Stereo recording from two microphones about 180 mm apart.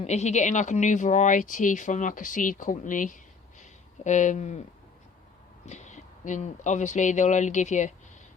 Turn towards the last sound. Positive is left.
turn(degrees=40)  # may be behind; listen again after turning